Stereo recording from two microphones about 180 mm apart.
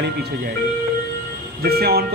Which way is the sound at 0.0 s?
65° right (ahead or behind).